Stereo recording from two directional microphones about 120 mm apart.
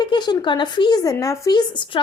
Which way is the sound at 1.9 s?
45° left (ahead or behind).